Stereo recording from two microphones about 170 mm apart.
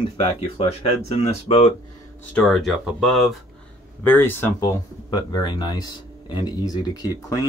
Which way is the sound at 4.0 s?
10° left (ahead or behind).